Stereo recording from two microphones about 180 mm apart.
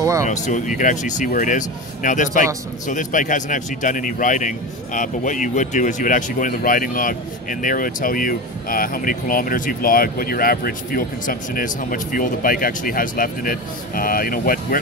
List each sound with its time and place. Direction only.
0.2 s speech: 45° left (ahead or behind)